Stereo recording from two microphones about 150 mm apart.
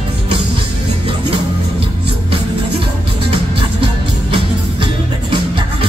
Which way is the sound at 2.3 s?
35° right (ahead or behind).